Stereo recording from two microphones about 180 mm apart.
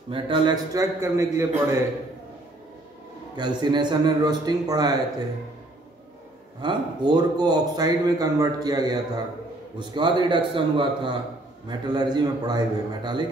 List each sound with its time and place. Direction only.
0.1 s a man's voice: 25° right (ahead or behind)
3.3 s a man's voice: 25° right (ahead or behind)
6.6 s a man's voice: 25° right (ahead or behind)